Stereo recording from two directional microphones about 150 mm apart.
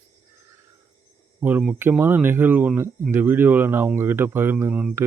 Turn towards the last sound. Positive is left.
turn(degrees=-10)  # may be behind; listen again after turning